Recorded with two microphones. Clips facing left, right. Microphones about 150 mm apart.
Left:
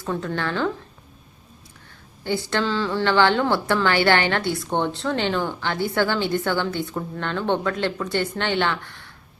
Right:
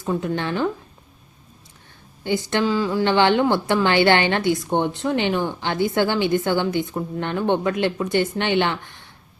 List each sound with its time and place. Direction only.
0.0 s a woman's voice: 15° right (ahead or behind)
2.2 s a woman's voice: 20° right (ahead or behind)